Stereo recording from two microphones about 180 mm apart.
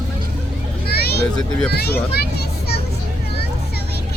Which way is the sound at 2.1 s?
60° left (ahead or behind).